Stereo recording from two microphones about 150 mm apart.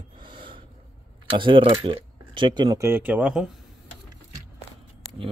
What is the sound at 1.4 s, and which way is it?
Speech, 35° right (ahead or behind).